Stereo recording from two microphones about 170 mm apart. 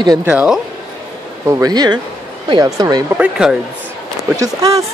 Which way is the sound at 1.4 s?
20° right (ahead or behind).